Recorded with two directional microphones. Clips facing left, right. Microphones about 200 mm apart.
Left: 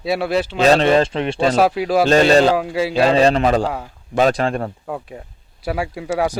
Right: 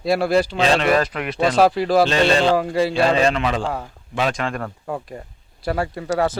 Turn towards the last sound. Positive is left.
turn(degrees=10)  # may be behind; listen again after turning